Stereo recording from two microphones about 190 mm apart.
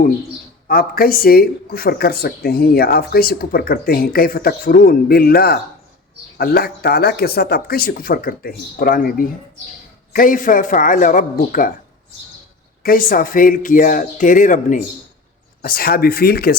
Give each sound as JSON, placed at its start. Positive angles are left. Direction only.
{"t": 0.7, "sound": "speech", "side_deg": 50}
{"t": 12.8, "sound": "speech", "side_deg": 45}